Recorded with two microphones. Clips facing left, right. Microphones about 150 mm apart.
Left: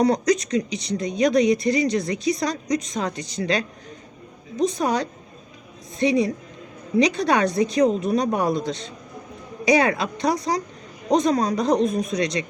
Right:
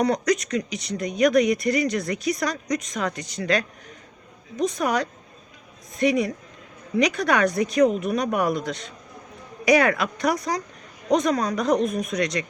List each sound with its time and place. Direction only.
0.0 s speech: 30° left (ahead or behind)
4.8 s speech: 30° left (ahead or behind)